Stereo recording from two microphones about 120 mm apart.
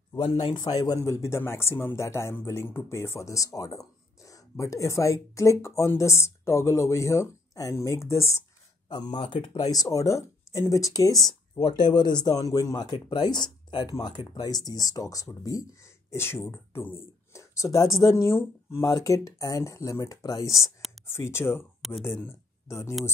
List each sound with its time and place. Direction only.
0.5 s speech: 30° left (ahead or behind)
8.8 s speech: 40° left (ahead or behind); by 22.9 s 20° left (ahead or behind)